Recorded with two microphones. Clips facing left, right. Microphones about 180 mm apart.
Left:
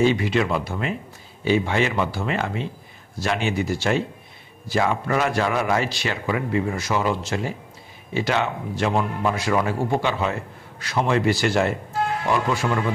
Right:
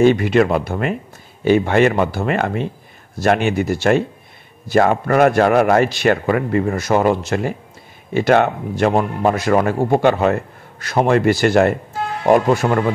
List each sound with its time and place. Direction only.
0.0 s a man's voice: 55° right (ahead or behind)